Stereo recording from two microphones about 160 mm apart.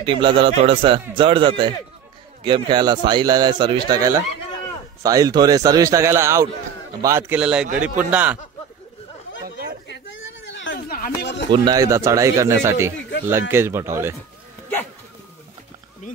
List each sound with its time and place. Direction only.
0.0 s a man's voice: 30° right (ahead or behind); by 8.4 s 10° right (ahead or behind)
10.7 s a sound: 80° left
11.5 s a man's voice: 25° right (ahead or behind)